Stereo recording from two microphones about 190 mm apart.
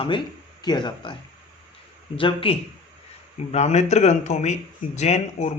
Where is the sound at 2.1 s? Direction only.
30° left (ahead or behind).